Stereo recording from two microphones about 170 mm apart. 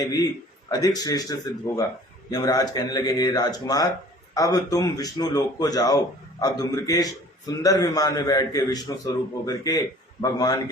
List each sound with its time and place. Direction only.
0.0 s a man's voice: 20° left (ahead or behind)